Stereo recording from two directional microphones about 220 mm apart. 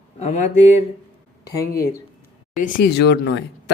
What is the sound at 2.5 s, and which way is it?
Speech, 40° left (ahead or behind).